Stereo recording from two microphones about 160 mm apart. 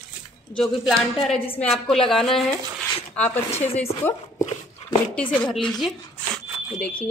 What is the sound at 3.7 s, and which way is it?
Speech, 15° left (ahead or behind).